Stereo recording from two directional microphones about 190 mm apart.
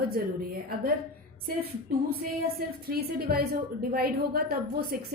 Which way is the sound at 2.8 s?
55° right (ahead or behind).